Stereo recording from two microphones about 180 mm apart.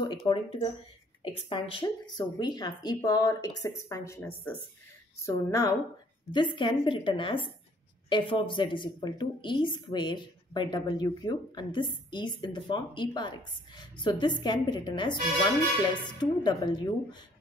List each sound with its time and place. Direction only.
0.0 s speech: 25° left (ahead or behind)
16.2 s speech: 25° left (ahead or behind)